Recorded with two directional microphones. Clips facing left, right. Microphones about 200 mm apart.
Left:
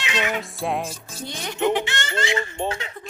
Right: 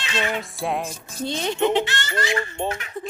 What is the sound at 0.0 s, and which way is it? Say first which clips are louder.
Music: even; 15° left (ahead or behind).